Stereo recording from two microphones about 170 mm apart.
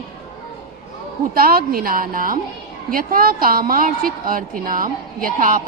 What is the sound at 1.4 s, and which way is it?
A woman's voice, 60° right (ahead or behind).